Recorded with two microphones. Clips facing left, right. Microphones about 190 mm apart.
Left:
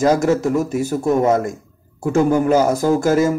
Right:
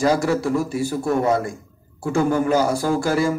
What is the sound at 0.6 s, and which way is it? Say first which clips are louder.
Speech: left 3 dB; 45° left (ahead or behind).